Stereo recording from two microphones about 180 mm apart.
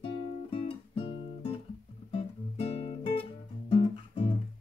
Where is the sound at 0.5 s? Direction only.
35° left (ahead or behind).